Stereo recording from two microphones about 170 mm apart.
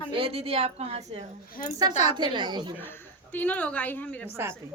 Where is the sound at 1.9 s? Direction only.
40° left (ahead or behind).